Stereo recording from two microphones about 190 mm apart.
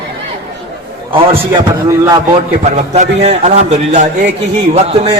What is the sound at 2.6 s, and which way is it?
A man's voice, 35° right (ahead or behind).